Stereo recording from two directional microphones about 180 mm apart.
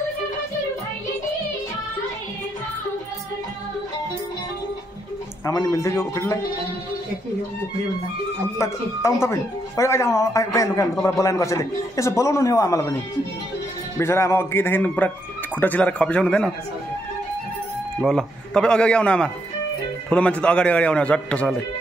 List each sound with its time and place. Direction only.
5.4 s speech: 20° left (ahead or behind)
8.5 s speech: 15° left (ahead or behind)
13.9 s speech: 15° left (ahead or behind)
18.0 s speech: 5° left (ahead or behind)